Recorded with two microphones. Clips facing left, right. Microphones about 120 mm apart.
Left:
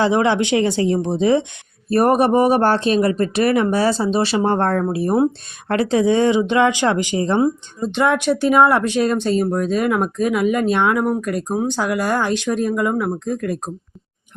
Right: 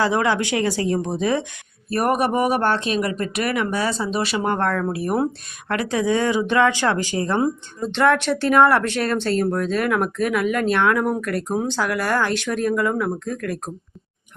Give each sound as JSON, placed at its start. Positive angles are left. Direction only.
{"t": 0.0, "sound": "speech", "side_deg": 25}